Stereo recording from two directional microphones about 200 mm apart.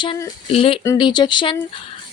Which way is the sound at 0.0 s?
25° left (ahead or behind).